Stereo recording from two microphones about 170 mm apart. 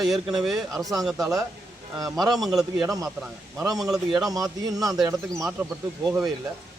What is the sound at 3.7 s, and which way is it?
Speech, centre (ahead or behind).